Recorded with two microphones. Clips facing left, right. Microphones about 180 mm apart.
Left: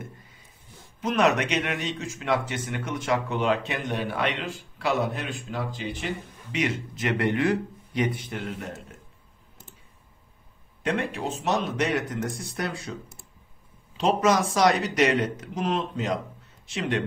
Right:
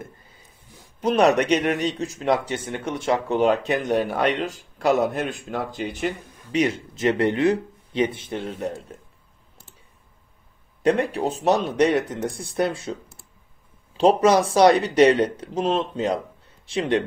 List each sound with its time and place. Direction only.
1.0 s speech: 35° right (ahead or behind)
10.8 s speech: 35° right (ahead or behind)
13.9 s speech: 30° right (ahead or behind)